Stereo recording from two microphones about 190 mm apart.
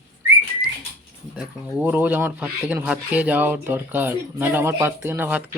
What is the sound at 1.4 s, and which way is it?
Speech, 10° right (ahead or behind).